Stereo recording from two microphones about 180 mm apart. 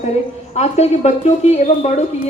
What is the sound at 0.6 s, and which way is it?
A woman's voice, 40° left (ahead or behind).